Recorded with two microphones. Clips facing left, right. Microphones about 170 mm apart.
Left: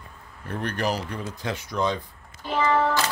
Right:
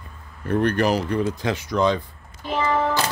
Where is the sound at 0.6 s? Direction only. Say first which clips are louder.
Right 5 dB; 65° right (ahead or behind); by 2.0 s 90° right.